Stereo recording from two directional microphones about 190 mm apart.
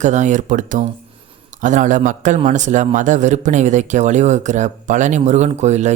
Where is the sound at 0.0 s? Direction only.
40° right (ahead or behind).